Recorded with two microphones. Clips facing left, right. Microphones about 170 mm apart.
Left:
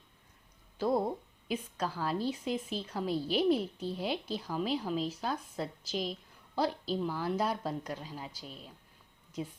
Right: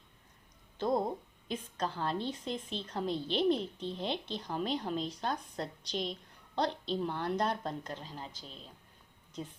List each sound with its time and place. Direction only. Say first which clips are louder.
0.8 s a woman's voice: left 1 dB; 5° left (ahead or behind)